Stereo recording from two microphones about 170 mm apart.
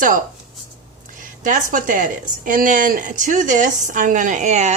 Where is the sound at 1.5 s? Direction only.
50° right (ahead or behind).